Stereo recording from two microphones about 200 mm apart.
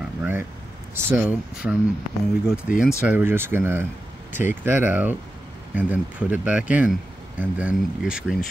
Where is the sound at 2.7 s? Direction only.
45° left (ahead or behind).